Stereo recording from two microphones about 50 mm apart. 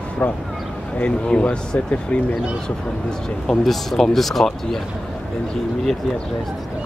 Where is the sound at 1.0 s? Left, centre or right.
Left.